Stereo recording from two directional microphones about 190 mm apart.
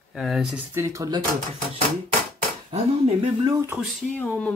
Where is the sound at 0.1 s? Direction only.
Centre (ahead or behind).